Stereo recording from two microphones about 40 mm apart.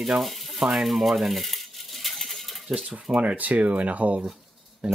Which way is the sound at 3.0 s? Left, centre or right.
Right.